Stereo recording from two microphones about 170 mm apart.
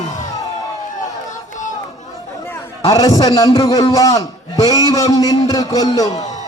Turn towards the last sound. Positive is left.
turn(degrees=20)  # may be behind; listen again after turning